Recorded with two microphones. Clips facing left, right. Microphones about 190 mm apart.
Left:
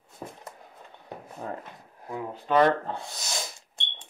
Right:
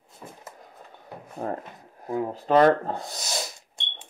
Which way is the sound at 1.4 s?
45° right (ahead or behind).